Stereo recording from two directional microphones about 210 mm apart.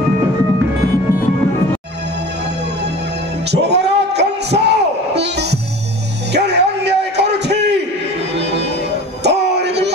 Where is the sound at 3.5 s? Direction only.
55° right (ahead or behind).